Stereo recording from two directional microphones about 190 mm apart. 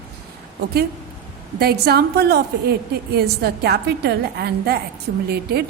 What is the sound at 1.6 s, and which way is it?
A woman's voice, 55° right (ahead or behind).